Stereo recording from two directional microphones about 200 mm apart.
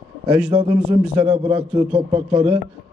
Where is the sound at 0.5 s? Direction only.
25° right (ahead or behind).